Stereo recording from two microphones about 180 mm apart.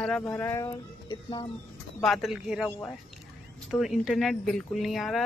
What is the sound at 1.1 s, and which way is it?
Speech, 30° left (ahead or behind).